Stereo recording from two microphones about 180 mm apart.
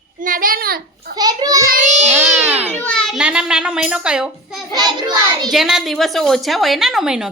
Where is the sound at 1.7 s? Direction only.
45° right (ahead or behind).